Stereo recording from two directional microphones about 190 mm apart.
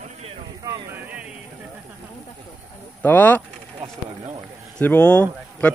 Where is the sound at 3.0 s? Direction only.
10° left (ahead or behind).